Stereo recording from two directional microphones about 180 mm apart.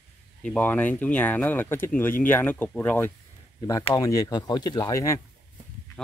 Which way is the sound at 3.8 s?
20° left (ahead or behind).